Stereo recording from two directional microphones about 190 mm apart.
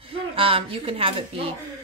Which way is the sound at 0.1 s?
30° right (ahead or behind).